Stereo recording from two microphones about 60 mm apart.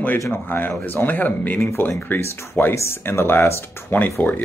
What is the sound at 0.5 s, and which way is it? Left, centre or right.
Speech, left.